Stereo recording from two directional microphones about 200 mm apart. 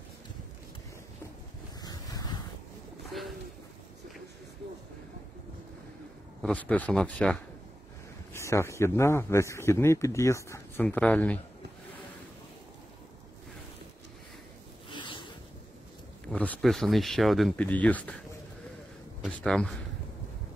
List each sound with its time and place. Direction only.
1.8 s ocean: 20° left (ahead or behind)
3.1 s bird: centre (ahead or behind)
6.4 s a man's voice: 5° left (ahead or behind)
14.9 s a sound: 25° left (ahead or behind)
16.3 s speech: 5° left (ahead or behind)
19.2 s speech: 5° left (ahead or behind)